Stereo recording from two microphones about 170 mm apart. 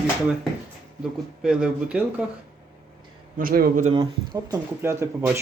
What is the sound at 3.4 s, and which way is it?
Speech, 55° right (ahead or behind).